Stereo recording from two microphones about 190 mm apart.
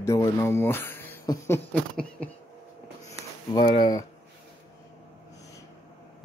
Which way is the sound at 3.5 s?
25° left (ahead or behind).